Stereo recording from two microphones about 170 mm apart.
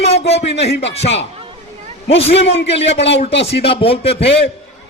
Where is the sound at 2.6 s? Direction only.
90° left.